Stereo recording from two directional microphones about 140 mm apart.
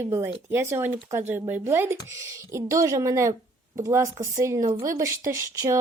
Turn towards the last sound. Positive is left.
turn(degrees=-20)  # may be behind; listen again after turning